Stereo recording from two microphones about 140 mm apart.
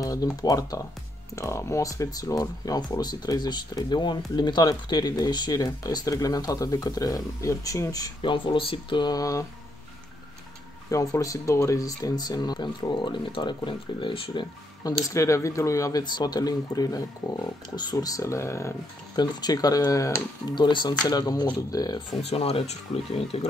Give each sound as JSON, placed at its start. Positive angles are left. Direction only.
{"t": 0.0, "sound": "speech", "side_deg": 25}
{"t": 10.9, "sound": "speech", "side_deg": 25}
{"t": 22.3, "sound": "speech", "side_deg": 45}